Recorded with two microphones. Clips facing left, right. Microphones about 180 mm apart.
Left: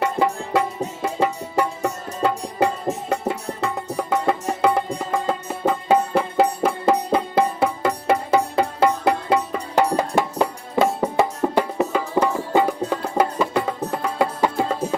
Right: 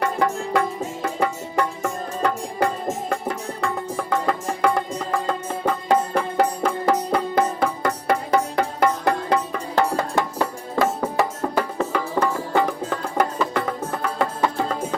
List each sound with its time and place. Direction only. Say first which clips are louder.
0.0 s music: left 1 dB; 20° left (ahead or behind)